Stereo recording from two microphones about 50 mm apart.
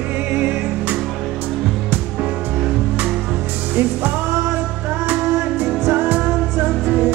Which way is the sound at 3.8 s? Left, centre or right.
Right.